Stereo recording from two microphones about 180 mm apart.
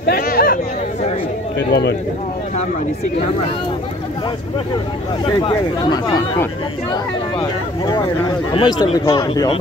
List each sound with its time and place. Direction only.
0.1 s speech: 60° left (ahead or behind)
1.7 s speech: 70° left (ahead or behind)
5.2 s speech: 30° left (ahead or behind)